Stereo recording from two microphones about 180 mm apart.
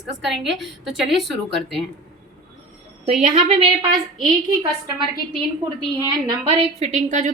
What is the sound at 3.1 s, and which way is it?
Speech, 40° right (ahead or behind).